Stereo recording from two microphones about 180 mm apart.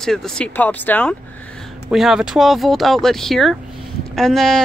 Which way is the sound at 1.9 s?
Centre (ahead or behind).